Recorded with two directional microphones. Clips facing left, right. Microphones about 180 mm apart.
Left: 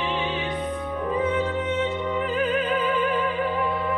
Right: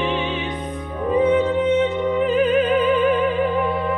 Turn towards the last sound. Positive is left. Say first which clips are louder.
# right 6 dB
turn(degrees=-20)  # may be behind; listen again after turning